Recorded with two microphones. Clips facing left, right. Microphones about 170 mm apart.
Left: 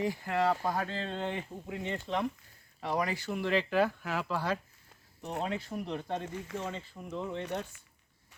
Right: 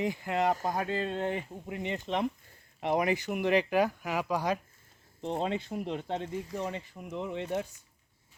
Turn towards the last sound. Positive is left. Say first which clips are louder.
# right 1 dB
turn(degrees=-15)  # may be behind; listen again after turning